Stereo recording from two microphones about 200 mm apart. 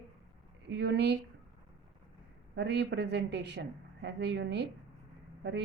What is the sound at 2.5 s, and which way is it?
A woman's voice, 60° right (ahead or behind).